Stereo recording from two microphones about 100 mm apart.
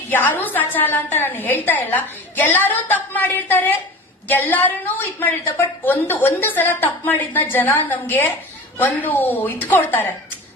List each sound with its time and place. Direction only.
0.1 s a woman's voice: 20° left (ahead or behind)